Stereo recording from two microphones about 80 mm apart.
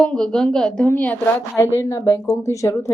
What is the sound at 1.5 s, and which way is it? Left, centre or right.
Speech, left.